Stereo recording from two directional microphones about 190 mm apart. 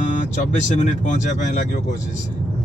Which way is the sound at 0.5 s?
40° left (ahead or behind).